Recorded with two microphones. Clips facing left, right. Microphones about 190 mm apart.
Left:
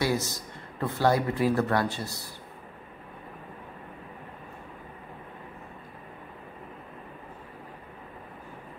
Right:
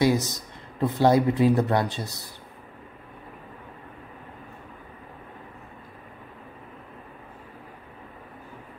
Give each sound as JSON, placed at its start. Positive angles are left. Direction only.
{"t": 0.0, "sound": "speech", "side_deg": -20}